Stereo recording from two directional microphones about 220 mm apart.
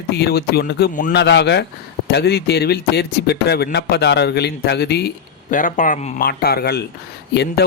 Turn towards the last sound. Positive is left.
turn(degrees=50)  # may be behind; listen again after turning